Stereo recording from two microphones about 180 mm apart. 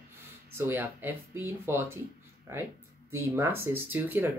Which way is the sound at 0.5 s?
10° right (ahead or behind).